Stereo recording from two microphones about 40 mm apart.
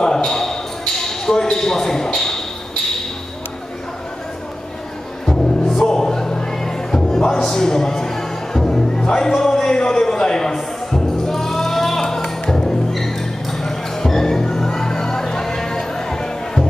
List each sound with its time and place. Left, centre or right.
0.0 s a sound: centre
2.1 s speech: centre
5.2 s music: centre